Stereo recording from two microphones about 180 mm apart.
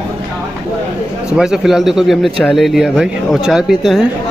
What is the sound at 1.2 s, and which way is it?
Speech, 5° right (ahead or behind).